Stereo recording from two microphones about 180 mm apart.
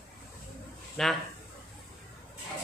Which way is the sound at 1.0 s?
Centre (ahead or behind).